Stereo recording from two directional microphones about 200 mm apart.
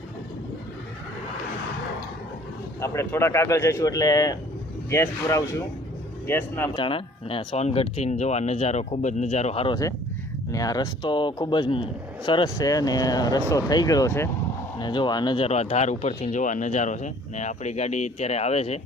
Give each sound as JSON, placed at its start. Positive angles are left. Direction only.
{"t": 2.8, "sound": "speech", "side_deg": 15}
{"t": 6.7, "sound": "a man's voice", "side_deg": 25}